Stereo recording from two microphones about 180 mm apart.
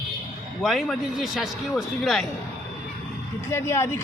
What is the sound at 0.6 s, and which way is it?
Speech, centre (ahead or behind).